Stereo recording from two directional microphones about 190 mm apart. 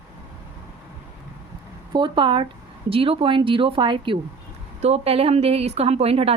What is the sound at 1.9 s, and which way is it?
A woman's voice, 25° right (ahead or behind).